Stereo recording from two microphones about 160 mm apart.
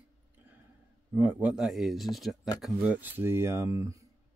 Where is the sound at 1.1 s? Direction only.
10° right (ahead or behind).